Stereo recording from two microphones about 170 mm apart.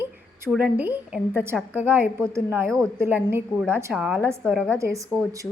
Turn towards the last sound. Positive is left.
turn(degrees=-20)  # may be behind; listen again after turning